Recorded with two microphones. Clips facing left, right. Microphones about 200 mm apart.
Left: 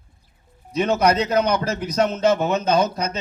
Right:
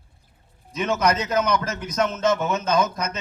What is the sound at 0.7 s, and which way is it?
A man's voice, 35° left (ahead or behind).